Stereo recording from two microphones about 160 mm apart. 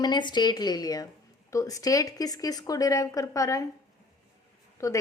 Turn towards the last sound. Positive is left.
turn(degrees=20)  # may be behind; listen again after turning